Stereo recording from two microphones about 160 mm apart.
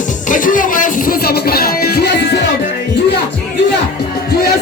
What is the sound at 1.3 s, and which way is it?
Music, 75° left (ahead or behind).